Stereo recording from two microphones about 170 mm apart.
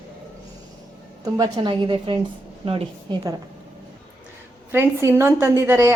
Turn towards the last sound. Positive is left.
turn(degrees=-15)  # may be behind; listen again after turning